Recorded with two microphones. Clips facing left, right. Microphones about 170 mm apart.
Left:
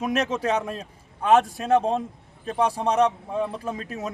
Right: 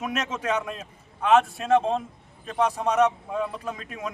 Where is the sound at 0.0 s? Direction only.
35° left (ahead or behind).